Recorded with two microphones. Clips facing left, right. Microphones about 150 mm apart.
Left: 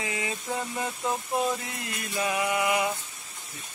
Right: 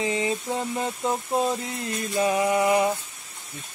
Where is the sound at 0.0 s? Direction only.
30° right (ahead or behind).